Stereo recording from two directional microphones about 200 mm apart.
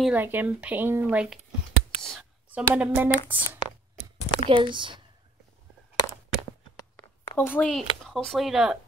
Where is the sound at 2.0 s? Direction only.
Centre (ahead or behind).